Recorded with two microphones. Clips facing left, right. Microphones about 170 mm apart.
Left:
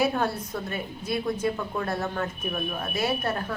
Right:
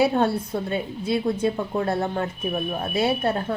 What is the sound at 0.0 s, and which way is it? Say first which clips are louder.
Speech: right 5 dB; 30° right (ahead or behind).